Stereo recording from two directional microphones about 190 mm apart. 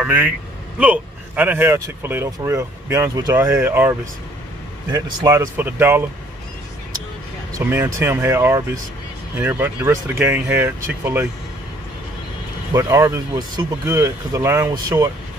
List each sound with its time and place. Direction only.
0.0 s a man's voice: 10° right (ahead or behind)
4.9 s speech: 20° right (ahead or behind)
7.5 s speech: 15° right (ahead or behind)
12.7 s speech: 15° right (ahead or behind)